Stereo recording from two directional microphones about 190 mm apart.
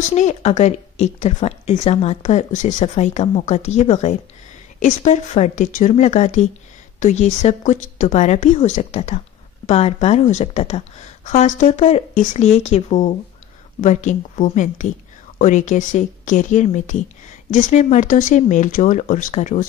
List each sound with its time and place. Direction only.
0.0 s speech: 35° left (ahead or behind)